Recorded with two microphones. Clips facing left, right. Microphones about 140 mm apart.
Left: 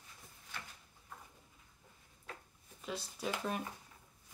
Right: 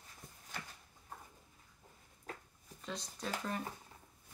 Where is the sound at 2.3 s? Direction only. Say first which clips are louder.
Right 2 dB; 45° right (ahead or behind).